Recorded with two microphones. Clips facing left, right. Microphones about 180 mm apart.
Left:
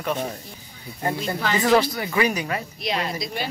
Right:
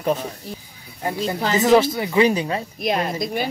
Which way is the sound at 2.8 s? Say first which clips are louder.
Right 6 dB; 50° right (ahead or behind).